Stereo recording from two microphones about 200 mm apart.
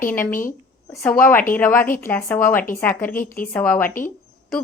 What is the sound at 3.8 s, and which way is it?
Speech, 45° left (ahead or behind).